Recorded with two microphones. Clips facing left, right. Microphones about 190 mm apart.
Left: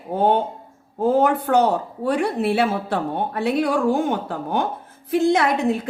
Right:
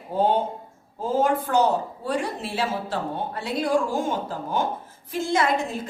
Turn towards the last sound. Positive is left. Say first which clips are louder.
# left 5 dB
turn(degrees=60)  # may be behind; listen again after turning